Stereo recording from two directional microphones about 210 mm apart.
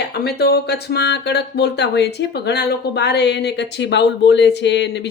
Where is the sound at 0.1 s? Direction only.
50° left (ahead or behind).